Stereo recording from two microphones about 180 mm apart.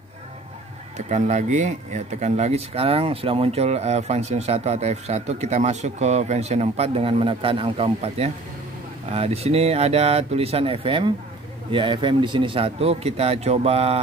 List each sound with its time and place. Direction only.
0.9 s speech: 40° right (ahead or behind)